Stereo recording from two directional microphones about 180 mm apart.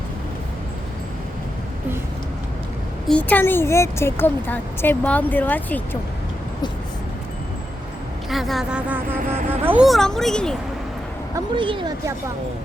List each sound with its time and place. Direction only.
3.1 s a woman's voice: 10° left (ahead or behind)
8.3 s speech: centre (ahead or behind)
11.3 s speech: 25° right (ahead or behind)